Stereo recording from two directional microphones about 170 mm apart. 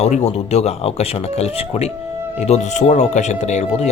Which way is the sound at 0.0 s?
40° left (ahead or behind).